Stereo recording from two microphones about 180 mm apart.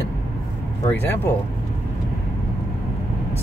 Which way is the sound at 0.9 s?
10° left (ahead or behind).